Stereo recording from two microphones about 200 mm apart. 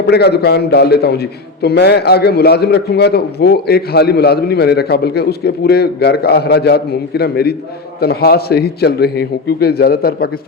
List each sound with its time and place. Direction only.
0.1 s a man's voice: 55° left (ahead or behind)